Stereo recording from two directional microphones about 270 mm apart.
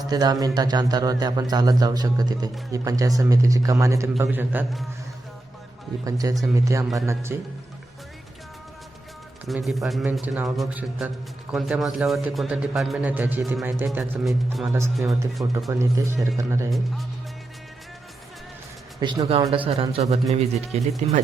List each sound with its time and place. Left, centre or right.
0.1 s a man's voice: centre
6.1 s a man's voice: centre
9.5 s a man's voice: centre
18.9 s speech: centre